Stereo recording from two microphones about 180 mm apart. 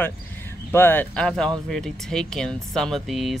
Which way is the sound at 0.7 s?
10° left (ahead or behind).